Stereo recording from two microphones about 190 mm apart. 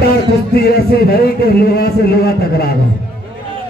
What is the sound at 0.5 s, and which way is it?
A man's voice, 55° left (ahead or behind).